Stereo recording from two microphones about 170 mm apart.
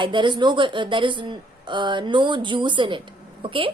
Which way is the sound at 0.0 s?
25° right (ahead or behind).